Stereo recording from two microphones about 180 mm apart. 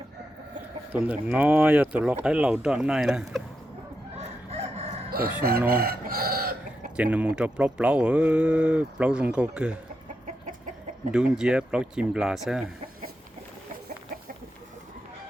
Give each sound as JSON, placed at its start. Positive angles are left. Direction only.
{"t": 0.9, "sound": "speech", "side_deg": -10}
{"t": 4.5, "sound": "chicken", "side_deg": -35}
{"t": 5.5, "sound": "chicken", "side_deg": -60}
{"t": 6.9, "sound": "speech", "side_deg": -10}
{"t": 11.1, "sound": "speech", "side_deg": -5}